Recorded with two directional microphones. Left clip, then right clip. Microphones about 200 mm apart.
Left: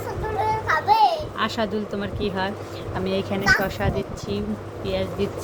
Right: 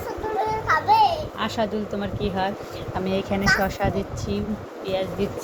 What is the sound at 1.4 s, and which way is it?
Speech, 10° left (ahead or behind).